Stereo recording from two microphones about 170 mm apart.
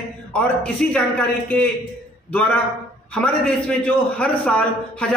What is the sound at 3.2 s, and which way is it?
A man's voice, 5° left (ahead or behind).